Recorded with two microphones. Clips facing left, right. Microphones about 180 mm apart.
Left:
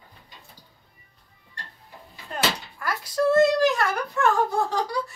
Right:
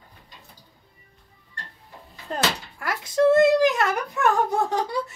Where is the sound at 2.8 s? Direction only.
20° right (ahead or behind).